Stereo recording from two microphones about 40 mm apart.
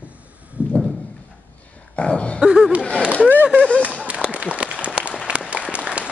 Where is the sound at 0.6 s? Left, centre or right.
Right.